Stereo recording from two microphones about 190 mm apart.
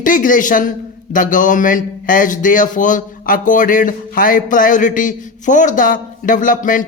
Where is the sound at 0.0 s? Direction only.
45° left (ahead or behind).